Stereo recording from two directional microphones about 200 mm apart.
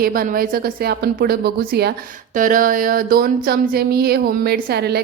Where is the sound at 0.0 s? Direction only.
45° right (ahead or behind).